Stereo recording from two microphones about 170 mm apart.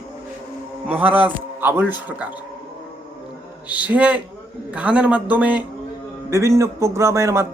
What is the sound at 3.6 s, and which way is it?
A man's voice, 10° right (ahead or behind).